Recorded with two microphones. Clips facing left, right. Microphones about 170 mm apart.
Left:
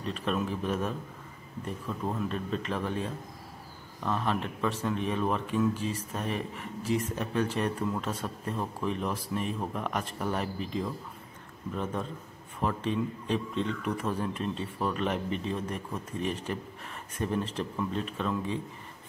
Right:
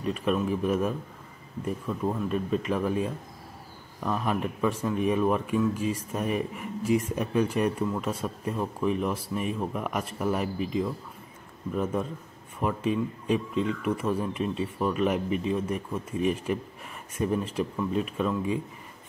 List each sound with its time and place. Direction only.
0.0 s speech: 5° right (ahead or behind)